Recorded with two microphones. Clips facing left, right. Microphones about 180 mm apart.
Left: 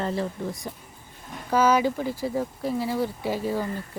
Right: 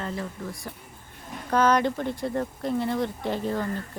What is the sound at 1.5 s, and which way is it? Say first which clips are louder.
Speech: left 1 dB; 5° left (ahead or behind).